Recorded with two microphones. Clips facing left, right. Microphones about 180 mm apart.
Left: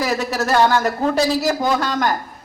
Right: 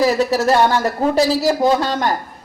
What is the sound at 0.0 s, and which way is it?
A man's voice, 25° right (ahead or behind).